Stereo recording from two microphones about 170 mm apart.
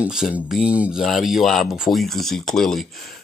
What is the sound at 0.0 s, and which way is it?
A man's voice, 5° right (ahead or behind).